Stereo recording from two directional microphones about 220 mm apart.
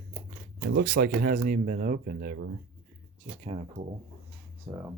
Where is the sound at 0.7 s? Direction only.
40° right (ahead or behind).